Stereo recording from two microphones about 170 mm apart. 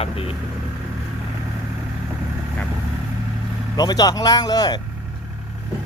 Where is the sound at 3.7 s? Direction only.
25° left (ahead or behind).